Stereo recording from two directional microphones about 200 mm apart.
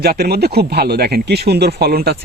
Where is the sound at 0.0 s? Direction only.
50° right (ahead or behind).